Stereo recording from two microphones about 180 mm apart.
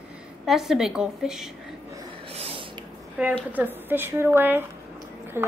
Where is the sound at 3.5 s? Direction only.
10° right (ahead or behind).